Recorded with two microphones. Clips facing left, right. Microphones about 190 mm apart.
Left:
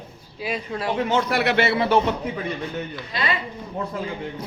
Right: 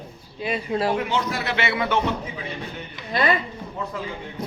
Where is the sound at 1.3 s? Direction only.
70° left (ahead or behind).